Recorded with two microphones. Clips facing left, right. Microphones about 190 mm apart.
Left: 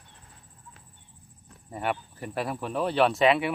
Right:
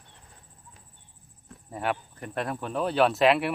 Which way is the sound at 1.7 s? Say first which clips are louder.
Even; centre (ahead or behind).